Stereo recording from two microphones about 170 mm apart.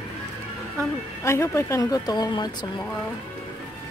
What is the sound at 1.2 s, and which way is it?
Speech, 15° left (ahead or behind).